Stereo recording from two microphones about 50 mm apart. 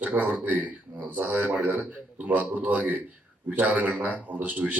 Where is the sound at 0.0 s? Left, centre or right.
Right.